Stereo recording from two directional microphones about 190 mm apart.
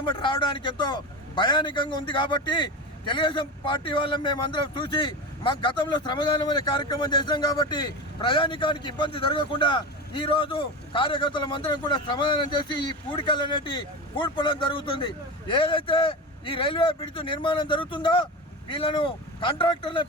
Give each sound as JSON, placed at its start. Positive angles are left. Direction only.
{"t": 0.0, "sound": "a man's voice", "side_deg": 25}